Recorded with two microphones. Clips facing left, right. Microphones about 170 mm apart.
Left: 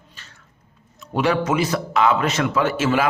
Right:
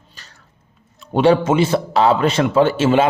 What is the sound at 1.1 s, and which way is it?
A man's voice, 30° right (ahead or behind).